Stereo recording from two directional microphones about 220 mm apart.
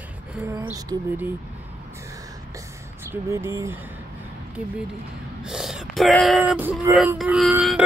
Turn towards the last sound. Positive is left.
turn(degrees=0)  # may be behind; listen again after turning